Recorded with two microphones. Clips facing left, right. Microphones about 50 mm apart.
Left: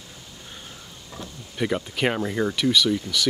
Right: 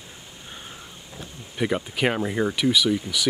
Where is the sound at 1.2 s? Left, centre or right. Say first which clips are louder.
Right 1 dB; centre.